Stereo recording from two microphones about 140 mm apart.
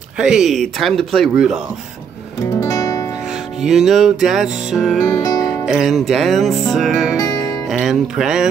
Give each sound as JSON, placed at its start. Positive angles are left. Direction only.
{"t": 0.2, "sound": "music", "side_deg": -5}
{"t": 2.6, "sound": "music", "side_deg": 25}
{"t": 3.3, "sound": "music", "side_deg": -5}
{"t": 5.1, "sound": "music", "side_deg": 25}
{"t": 5.5, "sound": "music", "side_deg": 0}
{"t": 7.2, "sound": "music", "side_deg": 25}
{"t": 7.6, "sound": "speech", "side_deg": -5}